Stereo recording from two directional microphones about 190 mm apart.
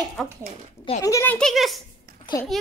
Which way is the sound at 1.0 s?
15° left (ahead or behind).